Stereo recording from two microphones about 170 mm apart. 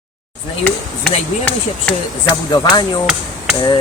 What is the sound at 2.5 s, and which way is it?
Speech, 25° left (ahead or behind).